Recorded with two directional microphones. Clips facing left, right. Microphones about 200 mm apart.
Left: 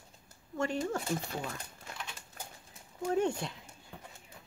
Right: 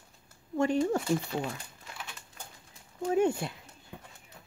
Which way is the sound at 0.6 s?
15° right (ahead or behind).